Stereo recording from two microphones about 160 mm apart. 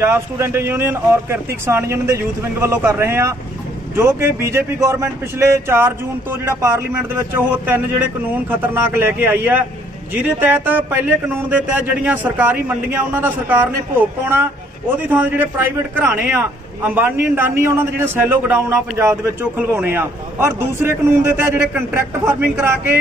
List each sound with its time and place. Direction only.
0.0 s a man's voice: 15° right (ahead or behind)